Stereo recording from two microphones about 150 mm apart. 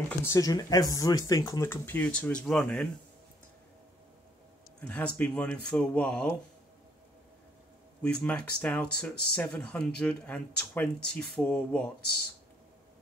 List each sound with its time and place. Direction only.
0.2 s speech: 20° left (ahead or behind)
4.8 s speech: 10° left (ahead or behind)
8.0 s speech: 10° left (ahead or behind)